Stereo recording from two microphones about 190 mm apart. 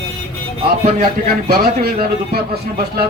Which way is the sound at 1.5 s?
55° right (ahead or behind).